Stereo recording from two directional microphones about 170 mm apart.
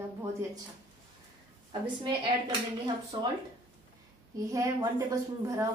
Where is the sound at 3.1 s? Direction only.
25° right (ahead or behind).